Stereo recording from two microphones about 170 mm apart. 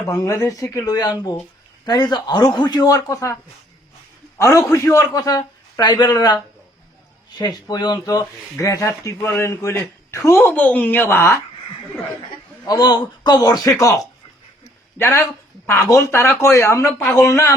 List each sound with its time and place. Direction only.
0.0 s a man's voice: 15° left (ahead or behind)
4.4 s a man's voice: 15° left (ahead or behind)
12.6 s a man's voice: 25° left (ahead or behind)